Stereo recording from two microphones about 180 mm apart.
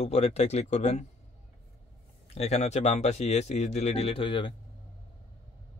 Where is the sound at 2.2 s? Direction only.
35° left (ahead or behind).